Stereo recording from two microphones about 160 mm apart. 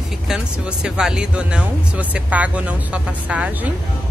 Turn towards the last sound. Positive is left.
turn(degrees=-10)  # may be behind; listen again after turning